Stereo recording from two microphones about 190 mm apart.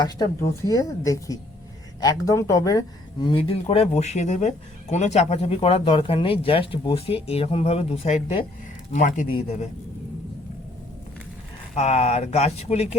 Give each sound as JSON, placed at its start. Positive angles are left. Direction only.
{"t": 0.0, "sound": "speech", "side_deg": 20}
{"t": 11.7, "sound": "speech", "side_deg": 35}